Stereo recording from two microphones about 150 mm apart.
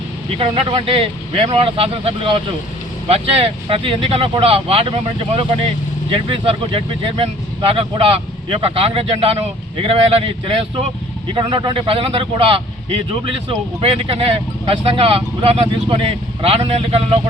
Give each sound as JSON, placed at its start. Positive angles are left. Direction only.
{"t": 0.3, "sound": "speech", "side_deg": -40}
{"t": 6.1, "sound": "speech", "side_deg": -35}